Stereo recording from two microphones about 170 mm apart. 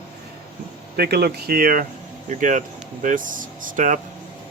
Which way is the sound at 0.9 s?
65° right (ahead or behind).